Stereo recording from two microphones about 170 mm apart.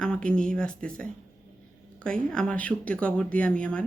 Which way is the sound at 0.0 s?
5° left (ahead or behind).